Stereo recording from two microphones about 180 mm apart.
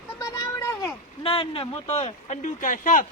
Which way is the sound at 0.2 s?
20° left (ahead or behind).